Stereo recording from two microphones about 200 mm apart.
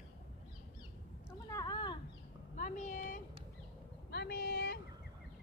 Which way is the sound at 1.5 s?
20° left (ahead or behind).